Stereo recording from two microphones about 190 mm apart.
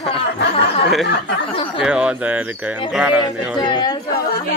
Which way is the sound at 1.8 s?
5° right (ahead or behind).